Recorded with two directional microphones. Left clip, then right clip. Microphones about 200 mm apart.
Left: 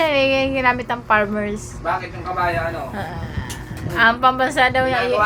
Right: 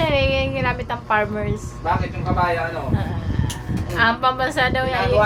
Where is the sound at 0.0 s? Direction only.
25° left (ahead or behind).